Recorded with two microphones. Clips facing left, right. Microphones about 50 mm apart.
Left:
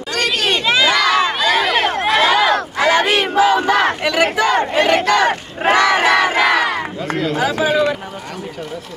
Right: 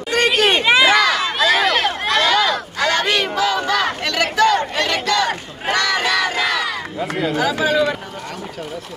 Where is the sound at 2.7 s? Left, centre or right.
Centre; by 6.9 s left.